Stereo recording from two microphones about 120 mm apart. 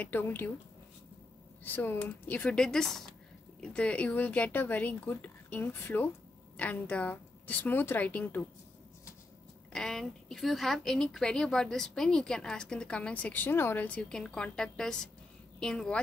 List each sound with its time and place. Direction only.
0.0 s speech: 15° left (ahead or behind)
1.6 s speech: 15° left (ahead or behind)
9.7 s a woman's voice: 5° left (ahead or behind)